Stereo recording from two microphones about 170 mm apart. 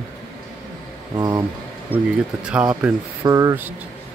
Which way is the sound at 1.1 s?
20° right (ahead or behind).